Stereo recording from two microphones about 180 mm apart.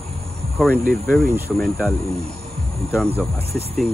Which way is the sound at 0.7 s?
50° right (ahead or behind).